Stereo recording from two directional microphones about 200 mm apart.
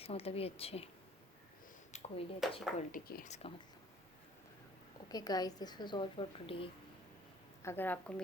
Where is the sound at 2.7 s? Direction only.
45° left (ahead or behind).